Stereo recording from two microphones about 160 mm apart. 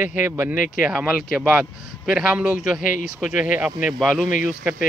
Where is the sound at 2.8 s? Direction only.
60° left (ahead or behind).